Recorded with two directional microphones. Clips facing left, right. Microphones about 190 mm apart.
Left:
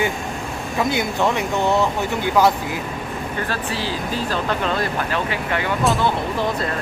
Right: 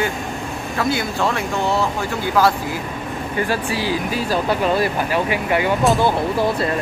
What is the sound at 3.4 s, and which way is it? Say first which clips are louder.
Speech: right 6 dB; 10° right (ahead or behind).